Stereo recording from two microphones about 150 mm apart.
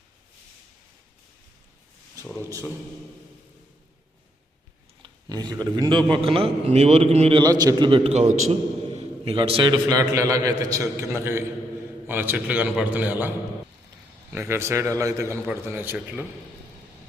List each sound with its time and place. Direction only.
2.4 s a man's voice: 20° right (ahead or behind)
5.0 s a man's voice: 30° right (ahead or behind)
7.4 s a man's voice: 25° right (ahead or behind); by 8.5 s 50° right (ahead or behind)
9.0 s a man's voice: 40° right (ahead or behind); by 13.3 s 10° right (ahead or behind)
14.3 s a man's voice: 15° right (ahead or behind)